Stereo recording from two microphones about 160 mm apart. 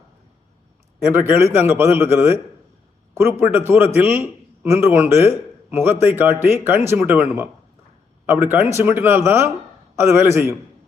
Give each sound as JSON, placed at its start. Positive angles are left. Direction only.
{"t": 1.0, "sound": "a man's voice", "side_deg": -10}
{"t": 3.4, "sound": "a man's voice", "side_deg": -10}